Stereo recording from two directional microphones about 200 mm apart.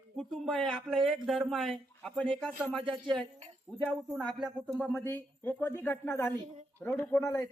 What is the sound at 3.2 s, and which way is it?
Speech, 25° right (ahead or behind).